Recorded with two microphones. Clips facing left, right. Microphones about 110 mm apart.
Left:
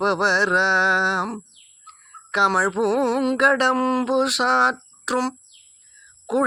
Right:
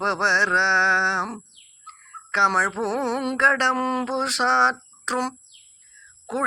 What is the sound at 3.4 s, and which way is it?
Speech, 10° left (ahead or behind).